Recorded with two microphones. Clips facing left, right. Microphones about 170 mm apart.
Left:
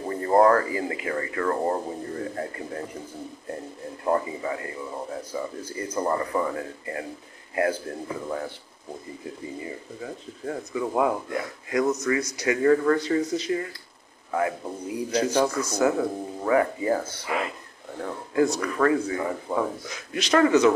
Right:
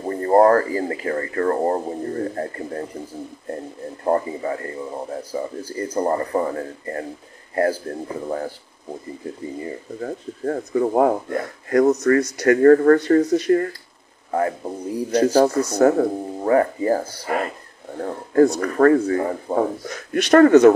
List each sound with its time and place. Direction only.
0.0 s speech: 40° right (ahead or behind)
4.0 s speech: 40° right (ahead or behind)
9.9 s speech: 50° right (ahead or behind)
12.0 s speech: 60° right (ahead or behind)
14.3 s speech: 40° right (ahead or behind)
15.6 s speech: 55° right (ahead or behind)